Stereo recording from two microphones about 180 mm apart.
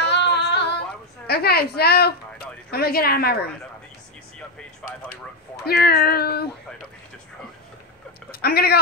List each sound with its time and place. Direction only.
0.0 s a sound: 70° left (ahead or behind)
1.2 s a woman's voice: 60° left (ahead or behind)
2.7 s child singing: 60° left (ahead or behind)
4.8 s speech: 5° left (ahead or behind)
5.7 s child singing: 60° left (ahead or behind)
8.3 s speech: 60° left (ahead or behind)